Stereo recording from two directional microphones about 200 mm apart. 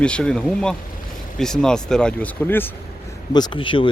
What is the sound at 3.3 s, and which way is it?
Speech, 20° left (ahead or behind).